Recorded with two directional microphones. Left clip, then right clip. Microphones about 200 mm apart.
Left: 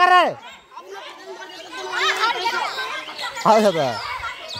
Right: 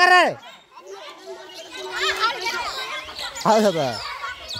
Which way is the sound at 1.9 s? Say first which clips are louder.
Left 2 dB; 20° right (ahead or behind).